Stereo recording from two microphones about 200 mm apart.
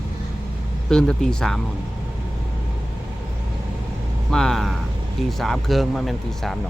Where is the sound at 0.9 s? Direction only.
5° left (ahead or behind).